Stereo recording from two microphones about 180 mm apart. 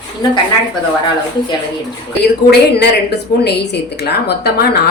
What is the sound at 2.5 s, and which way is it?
A woman's voice, 65° left (ahead or behind).